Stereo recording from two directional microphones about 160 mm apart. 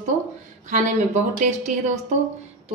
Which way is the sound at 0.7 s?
50° right (ahead or behind).